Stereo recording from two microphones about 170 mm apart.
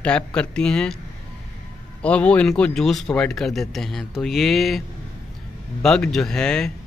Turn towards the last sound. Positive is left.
turn(degrees=5)  # may be behind; listen again after turning